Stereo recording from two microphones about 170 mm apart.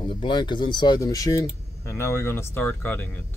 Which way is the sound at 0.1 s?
25° left (ahead or behind).